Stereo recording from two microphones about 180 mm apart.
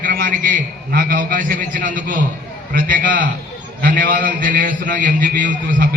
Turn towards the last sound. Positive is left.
turn(degrees=-50)  # may be behind; listen again after turning